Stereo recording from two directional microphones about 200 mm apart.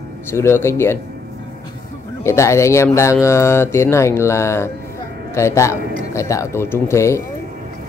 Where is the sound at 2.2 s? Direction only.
15° left (ahead or behind).